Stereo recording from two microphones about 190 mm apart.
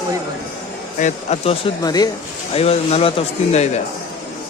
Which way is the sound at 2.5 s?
30° left (ahead or behind).